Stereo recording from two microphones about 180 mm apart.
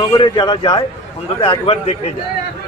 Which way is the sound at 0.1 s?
25° left (ahead or behind).